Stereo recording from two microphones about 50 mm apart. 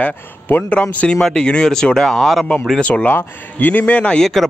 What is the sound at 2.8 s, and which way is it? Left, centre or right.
A man's voice, left.